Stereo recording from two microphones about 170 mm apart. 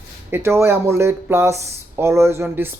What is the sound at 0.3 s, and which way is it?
Speech, 15° right (ahead or behind).